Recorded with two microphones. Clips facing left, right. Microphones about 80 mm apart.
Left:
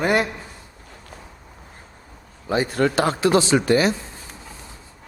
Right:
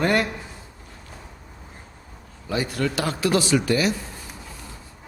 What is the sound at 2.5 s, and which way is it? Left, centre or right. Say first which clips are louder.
Speech: left 5 dB; left.